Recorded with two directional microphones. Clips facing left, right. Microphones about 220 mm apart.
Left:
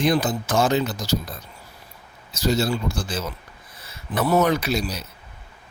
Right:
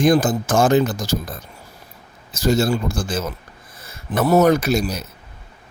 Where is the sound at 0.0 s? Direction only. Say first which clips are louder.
Right 5 dB; 45° right (ahead or behind).